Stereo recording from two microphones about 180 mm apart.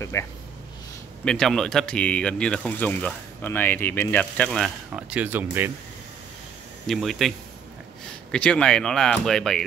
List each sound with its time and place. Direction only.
0.1 s speech: 15° left (ahead or behind)
1.2 s speech: 5° left (ahead or behind)
6.9 s speech: centre (ahead or behind)